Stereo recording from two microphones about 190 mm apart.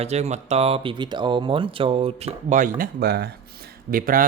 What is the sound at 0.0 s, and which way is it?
Speech, 35° right (ahead or behind).